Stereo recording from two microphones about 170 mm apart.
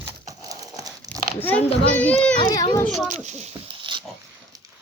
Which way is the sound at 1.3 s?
10° left (ahead or behind).